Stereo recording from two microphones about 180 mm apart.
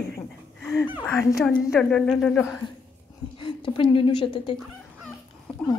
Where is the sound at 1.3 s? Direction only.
5° left (ahead or behind).